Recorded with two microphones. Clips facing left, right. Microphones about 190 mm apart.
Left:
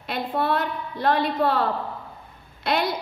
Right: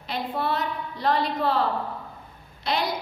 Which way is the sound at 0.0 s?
60° left (ahead or behind).